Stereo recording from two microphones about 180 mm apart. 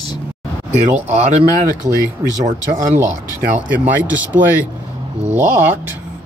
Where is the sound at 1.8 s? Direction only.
20° right (ahead or behind).